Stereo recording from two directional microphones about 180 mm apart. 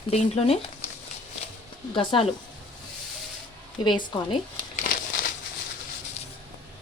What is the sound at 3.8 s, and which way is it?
Speech, 25° left (ahead or behind).